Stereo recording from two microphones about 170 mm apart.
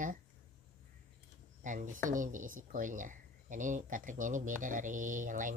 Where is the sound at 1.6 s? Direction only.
50° right (ahead or behind).